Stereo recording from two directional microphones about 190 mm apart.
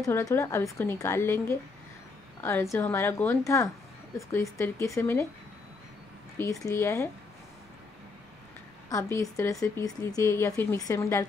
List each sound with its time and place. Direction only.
0.0 s speech: 15° left (ahead or behind)
6.3 s speech: 15° left (ahead or behind)
8.8 s speech: 15° left (ahead or behind)